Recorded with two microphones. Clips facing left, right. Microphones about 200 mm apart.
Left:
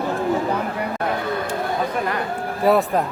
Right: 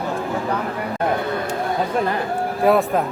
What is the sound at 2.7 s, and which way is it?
Speech, centre (ahead or behind).